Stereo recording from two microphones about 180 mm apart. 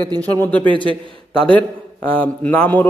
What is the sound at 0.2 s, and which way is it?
A man's voice, 10° left (ahead or behind).